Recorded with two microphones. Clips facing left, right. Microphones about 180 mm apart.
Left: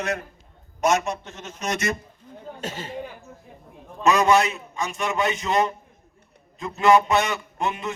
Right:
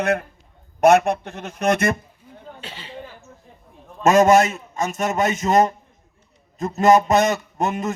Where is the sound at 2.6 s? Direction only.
45° left (ahead or behind).